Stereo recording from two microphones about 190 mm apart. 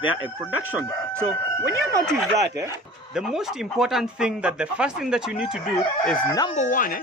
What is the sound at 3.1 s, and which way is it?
Speech, centre (ahead or behind).